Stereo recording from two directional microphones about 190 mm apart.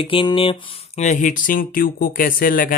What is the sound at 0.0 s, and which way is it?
Speech, 25° left (ahead or behind).